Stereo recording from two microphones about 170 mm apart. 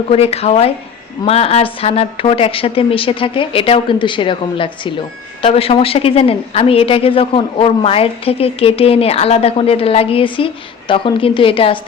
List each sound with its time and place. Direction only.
0.1 s a woman's voice: 35° left (ahead or behind)